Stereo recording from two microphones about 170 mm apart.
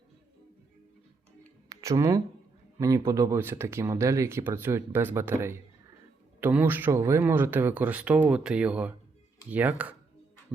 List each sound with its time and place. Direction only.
1.7 s a man's voice: 20° right (ahead or behind)